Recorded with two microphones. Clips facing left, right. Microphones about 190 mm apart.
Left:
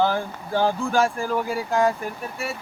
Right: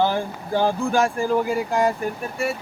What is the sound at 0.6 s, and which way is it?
Speech, 15° right (ahead or behind).